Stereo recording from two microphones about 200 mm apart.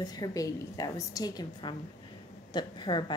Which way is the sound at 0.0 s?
20° left (ahead or behind).